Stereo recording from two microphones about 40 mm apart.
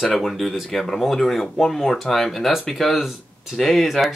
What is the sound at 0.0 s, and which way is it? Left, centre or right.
Speech, centre.